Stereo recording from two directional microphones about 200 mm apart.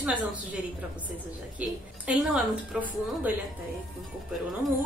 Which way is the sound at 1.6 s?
5° right (ahead or behind).